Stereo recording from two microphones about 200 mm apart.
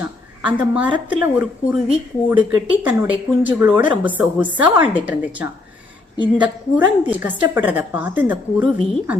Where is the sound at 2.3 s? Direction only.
10° right (ahead or behind).